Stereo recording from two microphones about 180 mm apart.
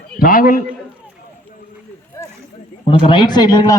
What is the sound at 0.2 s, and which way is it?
Speech, 50° left (ahead or behind).